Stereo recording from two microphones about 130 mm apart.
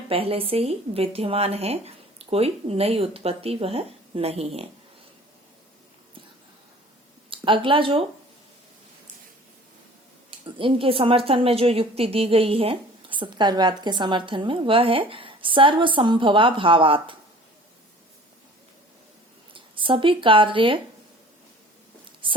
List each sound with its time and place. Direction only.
0.1 s speech: 45° right (ahead or behind)
7.3 s speech: 40° right (ahead or behind)
10.6 s a woman's voice: 45° right (ahead or behind)
19.5 s speech: 40° right (ahead or behind)
22.2 s a woman's voice: 40° right (ahead or behind)